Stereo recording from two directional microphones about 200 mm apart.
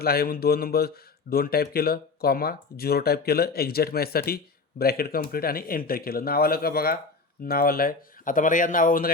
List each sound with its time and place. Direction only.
0.0 s speech: 50° left (ahead or behind)